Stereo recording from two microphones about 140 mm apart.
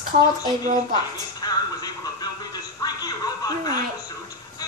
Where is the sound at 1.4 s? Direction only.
30° left (ahead or behind).